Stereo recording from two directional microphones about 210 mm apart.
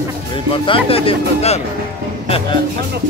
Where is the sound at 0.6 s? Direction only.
25° left (ahead or behind).